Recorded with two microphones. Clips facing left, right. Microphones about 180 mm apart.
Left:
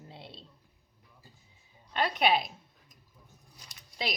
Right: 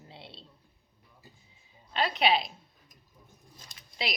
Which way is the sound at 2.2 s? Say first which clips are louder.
Even; 50° left (ahead or behind).